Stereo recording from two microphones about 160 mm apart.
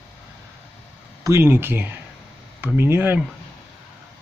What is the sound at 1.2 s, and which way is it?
Speech, 15° right (ahead or behind).